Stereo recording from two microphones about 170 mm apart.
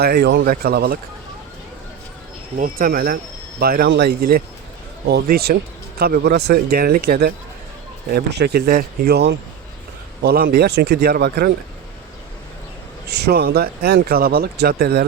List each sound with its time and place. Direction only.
0.0 s speech: 70° right (ahead or behind)
2.6 s speech: 55° right (ahead or behind)
8.1 s speech: 75° right (ahead or behind)
13.1 s speech: 70° right (ahead or behind)